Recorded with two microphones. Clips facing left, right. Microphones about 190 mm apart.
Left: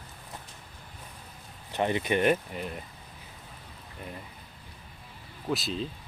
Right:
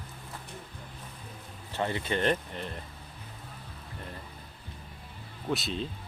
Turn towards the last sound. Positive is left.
turn(degrees=0)  # may be behind; listen again after turning